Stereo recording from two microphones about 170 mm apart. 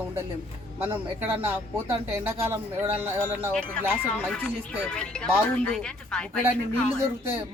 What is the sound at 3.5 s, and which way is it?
Speech, 5° left (ahead or behind).